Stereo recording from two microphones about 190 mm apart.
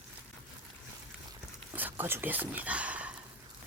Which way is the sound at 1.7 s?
10° right (ahead or behind).